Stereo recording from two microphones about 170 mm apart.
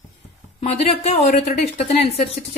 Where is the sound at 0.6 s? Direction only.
40° left (ahead or behind).